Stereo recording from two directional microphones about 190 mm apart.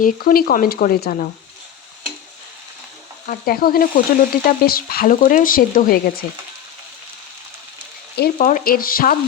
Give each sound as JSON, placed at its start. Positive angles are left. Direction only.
{"t": 0.0, "sound": "speech", "side_deg": 50}
{"t": 3.2, "sound": "speech", "side_deg": 50}
{"t": 8.1, "sound": "speech", "side_deg": 55}